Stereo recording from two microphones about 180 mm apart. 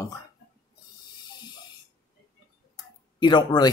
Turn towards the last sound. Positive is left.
turn(degrees=25)  # may be behind; listen again after turning